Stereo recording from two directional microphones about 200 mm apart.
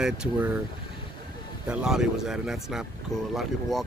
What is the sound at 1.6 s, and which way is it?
Speech, 5° right (ahead or behind).